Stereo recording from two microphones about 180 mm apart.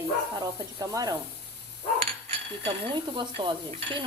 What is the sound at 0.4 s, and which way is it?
Stir, 20° right (ahead or behind).